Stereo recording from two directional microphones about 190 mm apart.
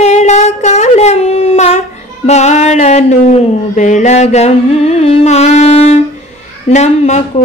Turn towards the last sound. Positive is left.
turn(degrees=40)  # may be behind; listen again after turning